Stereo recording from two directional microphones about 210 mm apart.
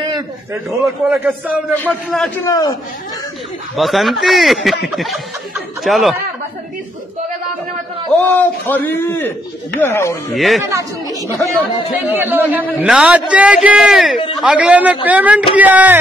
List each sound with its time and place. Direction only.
0.7 s speech: 5° right (ahead or behind)
2.4 s a man's voice: 15° left (ahead or behind)
3.7 s speech: centre (ahead or behind)
8.2 s a man's voice: 10° left (ahead or behind)
10.3 s speech: centre (ahead or behind)
10.7 s a man's voice: 15° right (ahead or behind)